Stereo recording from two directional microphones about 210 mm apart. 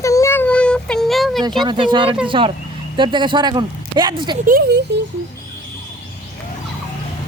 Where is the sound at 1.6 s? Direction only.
20° right (ahead or behind).